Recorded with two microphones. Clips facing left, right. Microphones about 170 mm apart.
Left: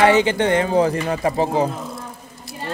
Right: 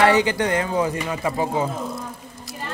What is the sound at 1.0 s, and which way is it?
Speech, 40° left (ahead or behind).